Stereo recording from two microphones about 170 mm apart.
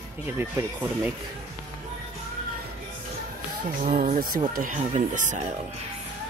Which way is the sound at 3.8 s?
50° right (ahead or behind).